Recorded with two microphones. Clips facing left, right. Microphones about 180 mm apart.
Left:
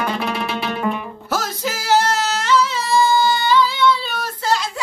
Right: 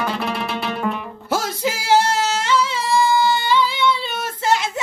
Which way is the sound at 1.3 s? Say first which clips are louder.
Right 2 dB; 25° right (ahead or behind).